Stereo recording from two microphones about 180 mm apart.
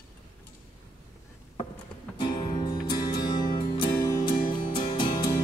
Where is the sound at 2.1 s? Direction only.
25° left (ahead or behind).